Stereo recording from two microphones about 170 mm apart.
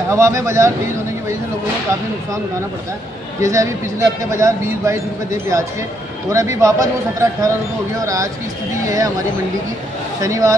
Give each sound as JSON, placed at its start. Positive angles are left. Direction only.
{"t": 0.1, "sound": "a man's voice", "side_deg": -15}
{"t": 3.3, "sound": "a man's voice", "side_deg": -20}
{"t": 10.2, "sound": "speech", "side_deg": -20}